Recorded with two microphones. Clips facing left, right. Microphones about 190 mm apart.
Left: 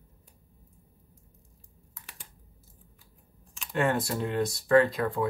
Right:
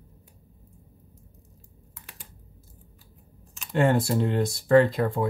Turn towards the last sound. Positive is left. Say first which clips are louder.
# right 3 dB
turn(degrees=-25)  # may be behind; listen again after turning